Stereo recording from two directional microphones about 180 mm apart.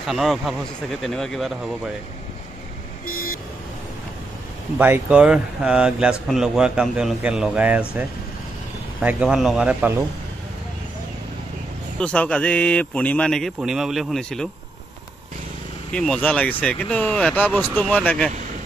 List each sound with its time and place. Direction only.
0.0 s speech: centre (ahead or behind)
3.1 s vehicle: 50° left (ahead or behind)
4.7 s speech: 10° right (ahead or behind)
9.0 s speech: 5° right (ahead or behind)
12.0 s speech: 5° left (ahead or behind)
15.9 s speech: 5° left (ahead or behind)